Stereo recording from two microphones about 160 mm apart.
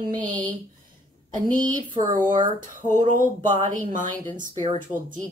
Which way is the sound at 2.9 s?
50° right (ahead or behind).